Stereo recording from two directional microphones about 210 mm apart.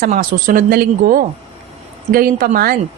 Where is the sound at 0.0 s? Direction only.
40° right (ahead or behind).